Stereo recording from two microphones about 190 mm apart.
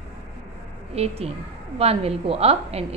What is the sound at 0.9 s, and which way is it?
A woman's voice, 30° right (ahead or behind).